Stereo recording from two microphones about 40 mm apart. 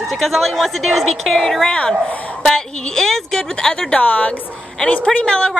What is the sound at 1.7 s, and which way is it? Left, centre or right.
Speech, left.